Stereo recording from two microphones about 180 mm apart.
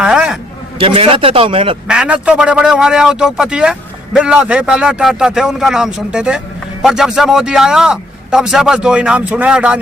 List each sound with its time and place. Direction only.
0.0 s a sound: 5° right (ahead or behind)
0.8 s speech: 30° right (ahead or behind)
1.9 s a man's voice: 5° right (ahead or behind)